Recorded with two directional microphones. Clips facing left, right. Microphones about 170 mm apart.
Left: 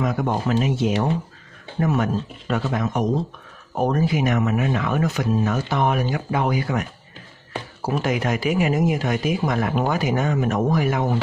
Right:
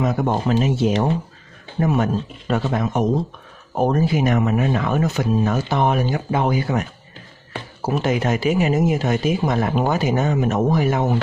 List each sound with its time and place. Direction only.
0.0 s speech: 25° right (ahead or behind)